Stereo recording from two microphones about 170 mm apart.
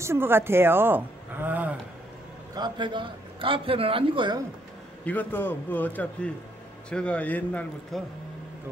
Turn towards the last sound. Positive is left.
turn(degrees=10)  # may be behind; listen again after turning